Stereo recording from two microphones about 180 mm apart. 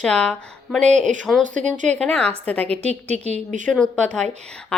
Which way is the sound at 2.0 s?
5° left (ahead or behind).